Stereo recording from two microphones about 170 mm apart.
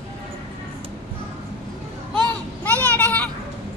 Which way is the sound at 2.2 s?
10° left (ahead or behind).